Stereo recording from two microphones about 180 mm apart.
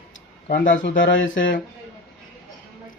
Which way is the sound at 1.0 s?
90° left.